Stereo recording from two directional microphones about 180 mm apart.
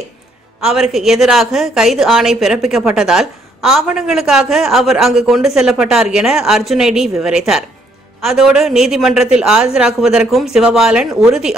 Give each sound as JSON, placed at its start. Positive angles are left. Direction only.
{"t": 0.6, "sound": "a woman's voice", "side_deg": -5}